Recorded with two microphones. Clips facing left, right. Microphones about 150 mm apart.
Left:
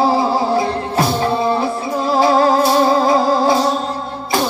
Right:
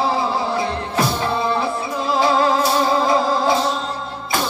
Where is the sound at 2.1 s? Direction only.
40° left (ahead or behind).